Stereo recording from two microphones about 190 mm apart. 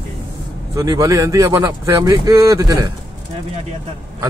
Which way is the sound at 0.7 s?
20° right (ahead or behind).